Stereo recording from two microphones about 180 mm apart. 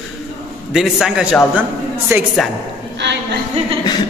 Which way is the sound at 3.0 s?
80° right.